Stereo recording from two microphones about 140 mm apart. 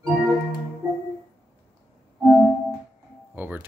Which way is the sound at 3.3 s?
10° right (ahead or behind).